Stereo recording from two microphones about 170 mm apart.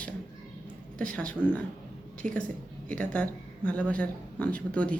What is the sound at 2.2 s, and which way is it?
Speech, 45° right (ahead or behind).